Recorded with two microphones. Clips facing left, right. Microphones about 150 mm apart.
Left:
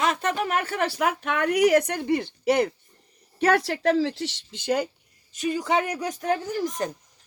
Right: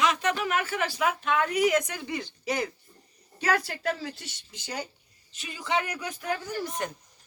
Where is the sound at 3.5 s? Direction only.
70° left (ahead or behind).